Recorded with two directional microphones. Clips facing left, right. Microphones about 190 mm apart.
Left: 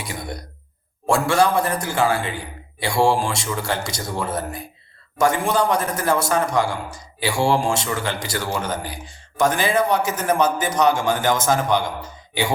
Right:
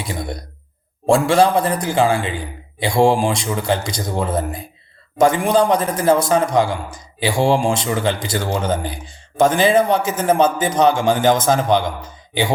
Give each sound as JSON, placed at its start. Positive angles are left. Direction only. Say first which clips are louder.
{"t": 1.0, "sound": "a man's voice", "louder": "right 4 dB", "side_deg": -20}